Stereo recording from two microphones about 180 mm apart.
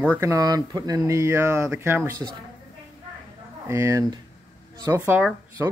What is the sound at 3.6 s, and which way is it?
Speech, 15° right (ahead or behind).